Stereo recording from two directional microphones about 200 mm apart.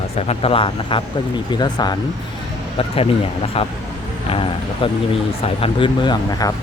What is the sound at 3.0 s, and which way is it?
Speech, 30° left (ahead or behind).